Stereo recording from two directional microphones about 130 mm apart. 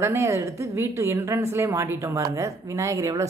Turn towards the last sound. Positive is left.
turn(degrees=-25)  # may be behind; listen again after turning